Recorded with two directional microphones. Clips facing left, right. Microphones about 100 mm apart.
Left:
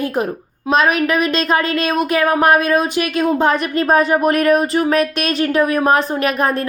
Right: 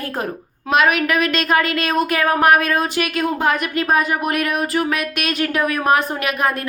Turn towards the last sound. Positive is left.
turn(degrees=30)  # may be behind; listen again after turning